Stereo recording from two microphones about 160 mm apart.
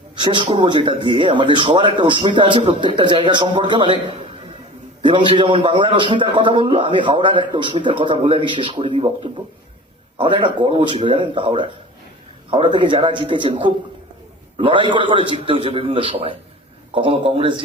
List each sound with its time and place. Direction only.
0.2 s speech: 30° right (ahead or behind)
5.0 s a man's voice: 30° right (ahead or behind)